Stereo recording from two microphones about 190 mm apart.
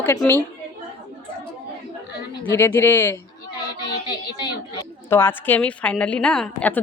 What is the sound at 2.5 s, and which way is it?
Speech, 10° left (ahead or behind).